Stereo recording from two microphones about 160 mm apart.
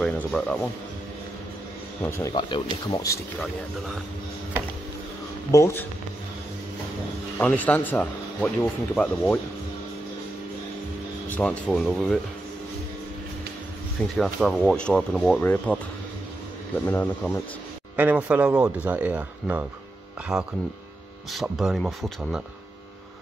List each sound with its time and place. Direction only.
0.0 s speech: 10° left (ahead or behind)
2.0 s speech: 15° left (ahead or behind)
2.3 s speech: 30° left (ahead or behind)
5.5 s speech: 15° left (ahead or behind)
7.3 s speech: 10° left (ahead or behind)
11.2 s speech: 10° left (ahead or behind)
14.1 s speech: centre (ahead or behind)
17.9 s speech: 10° right (ahead or behind)